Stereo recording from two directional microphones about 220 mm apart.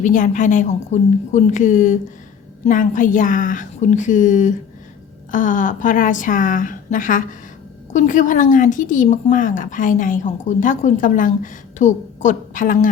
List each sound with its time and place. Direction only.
0.0 s a woman's voice: 35° left (ahead or behind)